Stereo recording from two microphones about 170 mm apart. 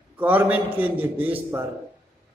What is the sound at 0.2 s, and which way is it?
A man's voice, 10° right (ahead or behind).